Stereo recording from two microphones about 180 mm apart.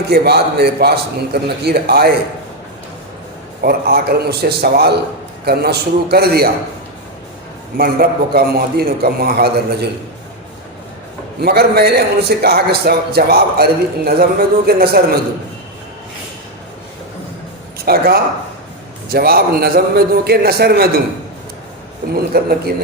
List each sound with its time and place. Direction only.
0.1 s a man's voice: 65° right (ahead or behind)
3.6 s a man's voice: 60° right (ahead or behind)
7.8 s a man's voice: 60° right (ahead or behind)
11.3 s a man's voice: 60° right (ahead or behind)
17.8 s a man's voice: 60° right (ahead or behind)
22.1 s a man's voice: 55° right (ahead or behind)